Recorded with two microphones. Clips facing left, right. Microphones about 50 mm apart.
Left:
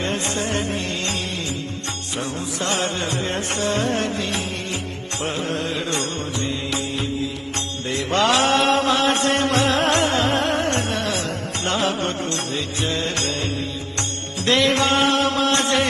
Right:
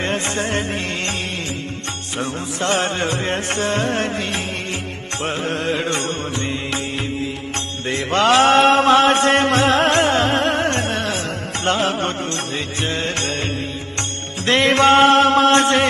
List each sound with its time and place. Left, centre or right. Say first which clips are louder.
0.0 s music: right 2 dB; right
2.1 s music: right 3 dB; right
7.9 s chant: right 3 dB; right
11.6 s music: right 3 dB; right
14.4 s music: right 4 dB; right